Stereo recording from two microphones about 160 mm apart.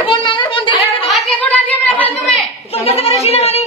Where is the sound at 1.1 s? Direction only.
10° left (ahead or behind).